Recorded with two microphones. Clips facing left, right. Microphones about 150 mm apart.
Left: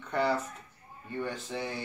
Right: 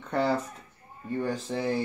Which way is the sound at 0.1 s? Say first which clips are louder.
Right 2 dB; 35° right (ahead or behind).